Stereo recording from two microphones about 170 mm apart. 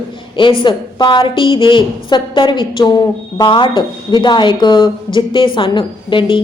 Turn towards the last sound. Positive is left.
turn(degrees=30)  # may be behind; listen again after turning